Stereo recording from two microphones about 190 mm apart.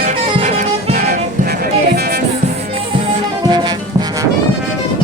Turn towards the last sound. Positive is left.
turn(degrees=-20)  # may be behind; listen again after turning